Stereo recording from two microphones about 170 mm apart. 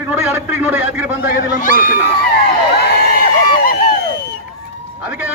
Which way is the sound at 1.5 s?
55° left (ahead or behind).